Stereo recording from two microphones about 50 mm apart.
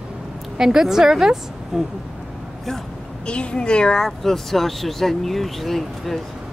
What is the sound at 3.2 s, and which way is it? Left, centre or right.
A woman's voice, centre.